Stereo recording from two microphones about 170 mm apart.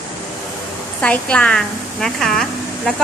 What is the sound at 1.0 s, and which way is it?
A woman's voice, 5° left (ahead or behind).